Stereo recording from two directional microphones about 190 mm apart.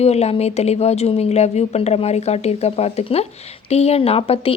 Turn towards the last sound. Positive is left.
turn(degrees=30)  # may be behind; listen again after turning